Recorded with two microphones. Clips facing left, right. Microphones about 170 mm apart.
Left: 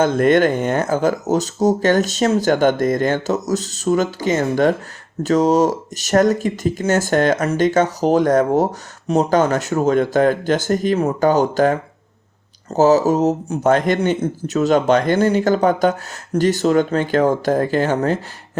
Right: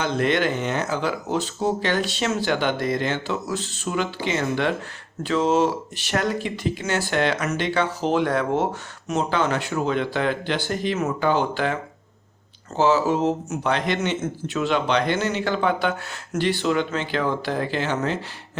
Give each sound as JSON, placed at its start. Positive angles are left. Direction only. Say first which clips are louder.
{"t": 0.0, "sound": "a man's voice", "louder": "left 8 dB", "side_deg": 50}